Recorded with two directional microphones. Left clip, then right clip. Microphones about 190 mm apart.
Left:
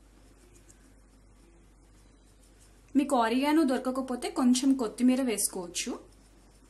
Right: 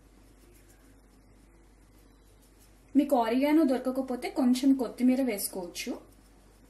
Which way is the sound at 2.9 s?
25° left (ahead or behind).